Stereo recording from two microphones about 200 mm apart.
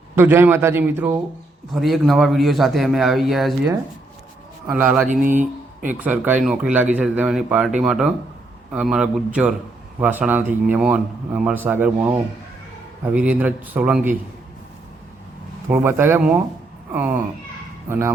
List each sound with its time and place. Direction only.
0.2 s a man's voice: 10° right (ahead or behind)
4.7 s a man's voice: 10° right (ahead or behind)
5.4 s speech: 40° right (ahead or behind)
6.0 s a man's voice: 10° right (ahead or behind)
15.7 s a man's voice: 10° right (ahead or behind)